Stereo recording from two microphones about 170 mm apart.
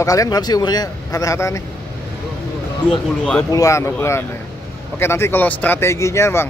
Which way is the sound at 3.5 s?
20° left (ahead or behind).